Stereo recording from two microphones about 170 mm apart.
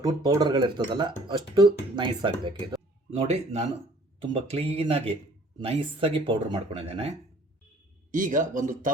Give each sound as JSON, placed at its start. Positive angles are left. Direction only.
{"t": 0.0, "sound": "speech", "side_deg": -20}
{"t": 3.1, "sound": "speech", "side_deg": -40}
{"t": 8.1, "sound": "speech", "side_deg": -50}